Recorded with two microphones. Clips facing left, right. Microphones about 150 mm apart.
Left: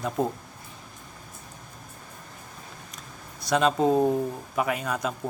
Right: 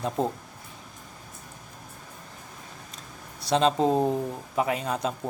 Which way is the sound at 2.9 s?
30° right (ahead or behind).